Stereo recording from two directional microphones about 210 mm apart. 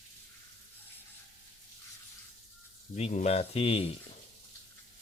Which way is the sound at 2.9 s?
30° left (ahead or behind).